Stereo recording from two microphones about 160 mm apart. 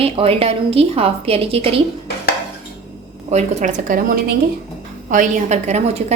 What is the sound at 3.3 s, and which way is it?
A woman's voice, 45° right (ahead or behind).